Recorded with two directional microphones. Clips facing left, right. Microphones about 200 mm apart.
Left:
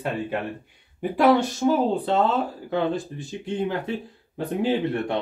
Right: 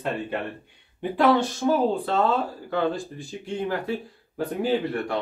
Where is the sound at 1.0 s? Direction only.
10° left (ahead or behind).